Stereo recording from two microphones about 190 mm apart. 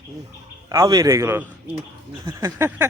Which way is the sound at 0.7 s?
20° right (ahead or behind).